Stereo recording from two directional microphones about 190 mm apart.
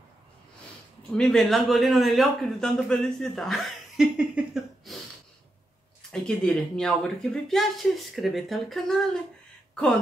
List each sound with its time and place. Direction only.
1.1 s speech: 5° left (ahead or behind)
4.9 s a sound: centre (ahead or behind)
6.1 s speech: 5° left (ahead or behind)